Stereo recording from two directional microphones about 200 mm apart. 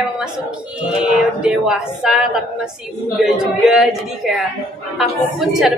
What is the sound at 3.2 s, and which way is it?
Speech, centre (ahead or behind).